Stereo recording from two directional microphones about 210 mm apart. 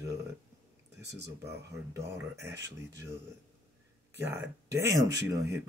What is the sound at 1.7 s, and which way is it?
Speech, 15° right (ahead or behind).